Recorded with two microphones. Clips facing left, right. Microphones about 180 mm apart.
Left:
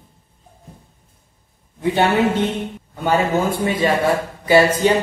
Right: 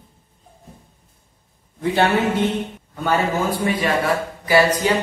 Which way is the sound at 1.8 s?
20° left (ahead or behind).